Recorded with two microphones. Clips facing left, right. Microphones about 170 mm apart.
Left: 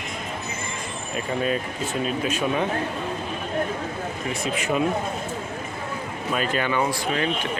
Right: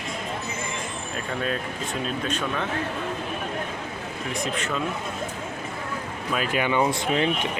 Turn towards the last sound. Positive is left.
turn(degrees=-25)  # may be behind; listen again after turning